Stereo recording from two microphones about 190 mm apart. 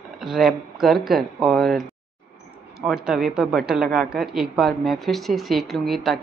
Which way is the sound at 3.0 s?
Centre (ahead or behind).